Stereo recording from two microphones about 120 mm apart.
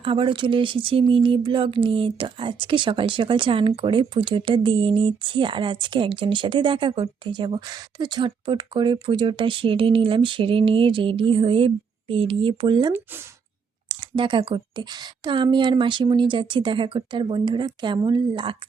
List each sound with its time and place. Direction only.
0.0 s speech: 45° right (ahead or behind)
14.2 s a woman's voice: 45° right (ahead or behind)